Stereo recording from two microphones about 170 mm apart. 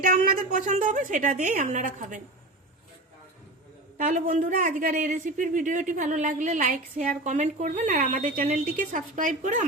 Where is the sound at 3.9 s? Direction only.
50° right (ahead or behind).